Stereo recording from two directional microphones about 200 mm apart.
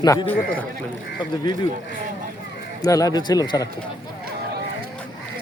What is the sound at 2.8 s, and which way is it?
Speech, 20° left (ahead or behind).